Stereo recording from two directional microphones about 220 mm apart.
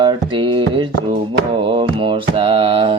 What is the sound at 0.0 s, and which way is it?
Music, 20° right (ahead or behind).